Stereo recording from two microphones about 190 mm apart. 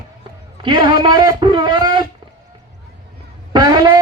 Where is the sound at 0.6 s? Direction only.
25° right (ahead or behind).